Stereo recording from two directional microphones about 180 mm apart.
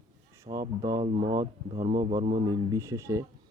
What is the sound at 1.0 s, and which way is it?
Speech, 35° right (ahead or behind).